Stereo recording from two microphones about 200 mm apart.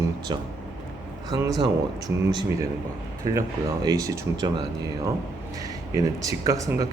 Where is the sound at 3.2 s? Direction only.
15° right (ahead or behind).